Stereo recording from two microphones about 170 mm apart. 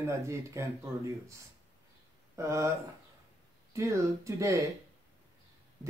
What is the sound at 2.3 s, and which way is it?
Speech, 15° right (ahead or behind).